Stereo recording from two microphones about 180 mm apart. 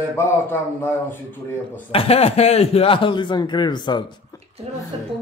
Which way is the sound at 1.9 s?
35° left (ahead or behind).